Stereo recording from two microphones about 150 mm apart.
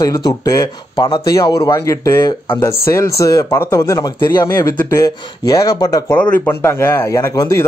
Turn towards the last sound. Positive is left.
turn(degrees=25)  # may be behind; listen again after turning